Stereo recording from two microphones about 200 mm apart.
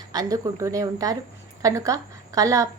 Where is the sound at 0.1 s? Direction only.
20° right (ahead or behind).